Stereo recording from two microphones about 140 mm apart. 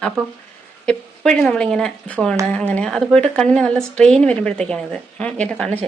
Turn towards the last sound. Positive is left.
turn(degrees=5)  # may be behind; listen again after turning